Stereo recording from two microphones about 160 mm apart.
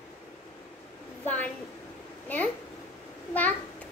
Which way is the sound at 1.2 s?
10° left (ahead or behind).